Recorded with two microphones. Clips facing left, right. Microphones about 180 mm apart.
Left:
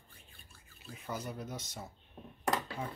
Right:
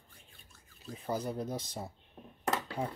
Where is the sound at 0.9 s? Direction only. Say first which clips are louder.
Right 6 dB; 30° right (ahead or behind).